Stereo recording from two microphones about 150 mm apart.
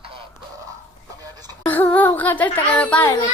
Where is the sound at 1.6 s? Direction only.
10° left (ahead or behind).